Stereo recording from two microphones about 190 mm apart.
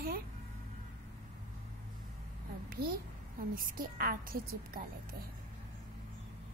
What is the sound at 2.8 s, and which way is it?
A child's voice, 55° right (ahead or behind).